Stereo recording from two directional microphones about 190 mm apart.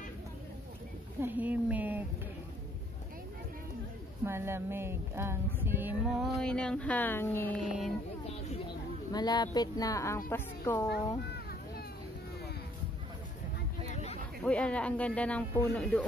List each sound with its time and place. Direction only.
1.2 s a woman's voice: 10° right (ahead or behind)
4.2 s speech: 15° right (ahead or behind); by 7.6 s 10° left (ahead or behind)
9.1 s a woman's voice: 20° left (ahead or behind)
14.4 s a woman's voice: 5° left (ahead or behind)